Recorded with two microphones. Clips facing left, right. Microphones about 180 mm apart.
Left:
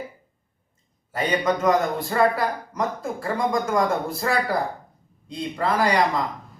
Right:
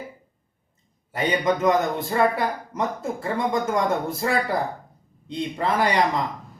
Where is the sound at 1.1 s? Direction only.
25° right (ahead or behind).